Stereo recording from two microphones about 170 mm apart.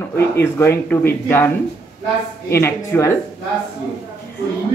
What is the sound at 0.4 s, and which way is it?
A man's voice, 15° left (ahead or behind).